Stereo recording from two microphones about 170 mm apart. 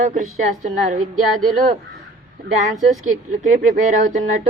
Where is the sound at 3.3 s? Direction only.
50° right (ahead or behind).